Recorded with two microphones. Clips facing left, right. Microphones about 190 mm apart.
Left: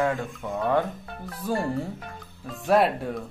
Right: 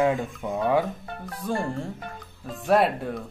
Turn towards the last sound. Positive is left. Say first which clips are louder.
# even
turn(degrees=0)  # may be behind; listen again after turning